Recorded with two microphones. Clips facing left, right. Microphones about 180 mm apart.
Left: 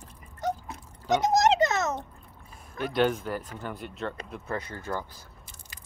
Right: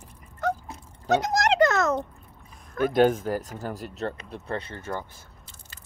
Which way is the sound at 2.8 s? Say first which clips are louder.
Right 5 dB; 45° right (ahead or behind).